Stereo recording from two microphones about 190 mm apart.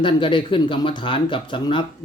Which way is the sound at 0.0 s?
25° left (ahead or behind).